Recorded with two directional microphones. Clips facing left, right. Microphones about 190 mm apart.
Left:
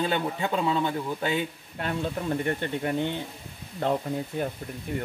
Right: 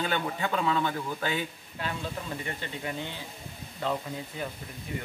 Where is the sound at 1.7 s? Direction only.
55° left (ahead or behind).